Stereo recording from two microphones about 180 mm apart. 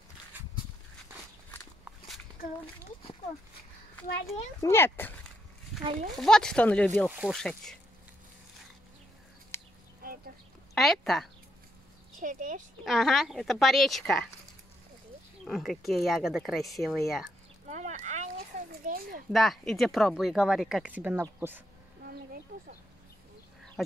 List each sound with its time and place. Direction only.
4.3 s speech: 15° left (ahead or behind)
5.9 s speech: 40° right (ahead or behind)
6.1 s a woman's voice: 5° left (ahead or behind)
7.1 s a woman's voice: 5° right (ahead or behind)
10.7 s speech: centre (ahead or behind)
12.2 s speech: 45° right (ahead or behind)
12.8 s a woman's voice: centre (ahead or behind)
15.4 s a woman's voice: centre (ahead or behind)
17.6 s a sound: 40° right (ahead or behind)
19.3 s a woman's voice: centre (ahead or behind)